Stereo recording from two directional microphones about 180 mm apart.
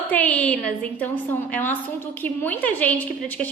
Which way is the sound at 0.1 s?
10° left (ahead or behind).